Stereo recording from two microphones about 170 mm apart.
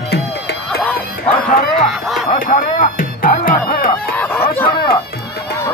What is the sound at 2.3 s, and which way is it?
Music, 55° left (ahead or behind).